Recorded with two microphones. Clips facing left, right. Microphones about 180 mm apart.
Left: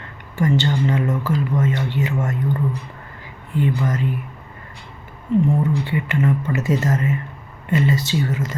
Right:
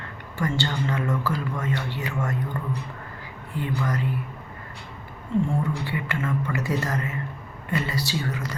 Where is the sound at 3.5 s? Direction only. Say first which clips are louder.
Left 9 dB; 20° left (ahead or behind).